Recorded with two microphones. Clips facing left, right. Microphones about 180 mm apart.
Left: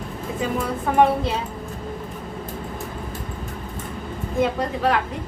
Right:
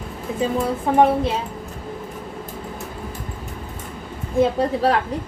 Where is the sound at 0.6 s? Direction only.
20° right (ahead or behind).